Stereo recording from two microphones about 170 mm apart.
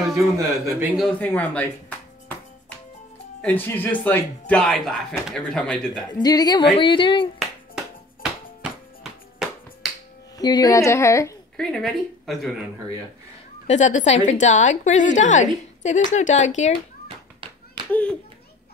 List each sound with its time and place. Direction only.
0.1 s a man's voice: 15° right (ahead or behind)
0.9 s speech: 5° left (ahead or behind)
3.4 s speech: 10° left (ahead or behind)
6.2 s speech: 25° left (ahead or behind)
7.3 s music: centre (ahead or behind)
10.3 s speech: 25° left (ahead or behind)
11.5 s speech: centre (ahead or behind)
13.7 s a woman's voice: 45° left (ahead or behind)
17.8 s a sound: 30° right (ahead or behind)